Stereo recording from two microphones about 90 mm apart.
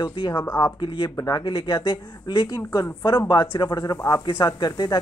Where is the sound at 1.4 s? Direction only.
70° left (ahead or behind).